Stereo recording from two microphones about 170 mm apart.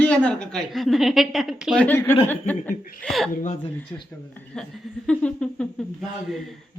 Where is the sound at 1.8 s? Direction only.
10° left (ahead or behind).